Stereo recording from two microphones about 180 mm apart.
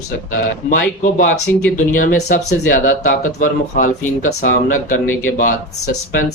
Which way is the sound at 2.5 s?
50° left (ahead or behind).